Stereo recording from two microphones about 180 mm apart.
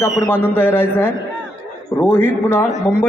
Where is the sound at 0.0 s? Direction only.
15° left (ahead or behind).